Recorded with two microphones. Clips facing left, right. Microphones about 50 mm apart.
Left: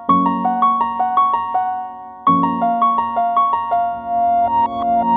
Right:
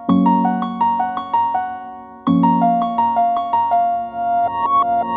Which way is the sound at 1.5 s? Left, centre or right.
Centre.